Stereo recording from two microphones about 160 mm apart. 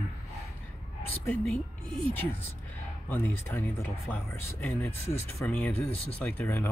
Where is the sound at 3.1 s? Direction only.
15° left (ahead or behind).